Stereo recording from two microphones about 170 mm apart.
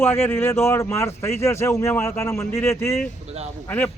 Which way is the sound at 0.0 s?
15° left (ahead or behind).